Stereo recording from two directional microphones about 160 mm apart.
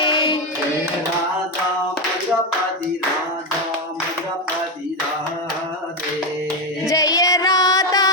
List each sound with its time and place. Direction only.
0.0 s hands: 30° left (ahead or behind)
6.9 s music: 20° left (ahead or behind)